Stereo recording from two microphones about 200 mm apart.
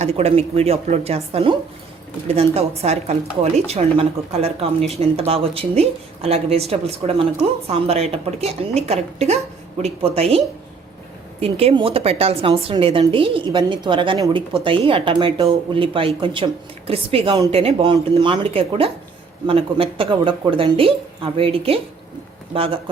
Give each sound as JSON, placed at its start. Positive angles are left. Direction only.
{"t": 0.0, "sound": "a woman's voice", "side_deg": -30}